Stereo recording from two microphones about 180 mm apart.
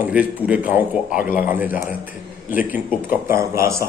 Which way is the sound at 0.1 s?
10° right (ahead or behind).